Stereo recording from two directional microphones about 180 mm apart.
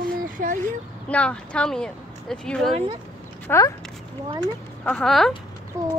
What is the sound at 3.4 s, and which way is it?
Speech, 15° left (ahead or behind).